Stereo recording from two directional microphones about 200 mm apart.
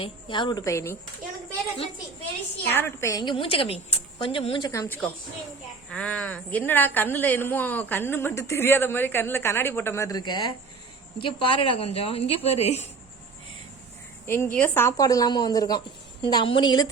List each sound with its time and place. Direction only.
0.0 s a woman's voice: 25° left (ahead or behind)
2.7 s a woman's voice: 15° left (ahead or behind)
5.9 s a woman's voice: 5° left (ahead or behind); by 12.9 s 30° left (ahead or behind)
14.3 s a woman's voice: 10° left (ahead or behind)